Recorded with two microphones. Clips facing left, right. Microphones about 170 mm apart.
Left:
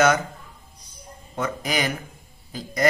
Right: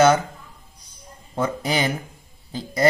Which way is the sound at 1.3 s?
30° right (ahead or behind).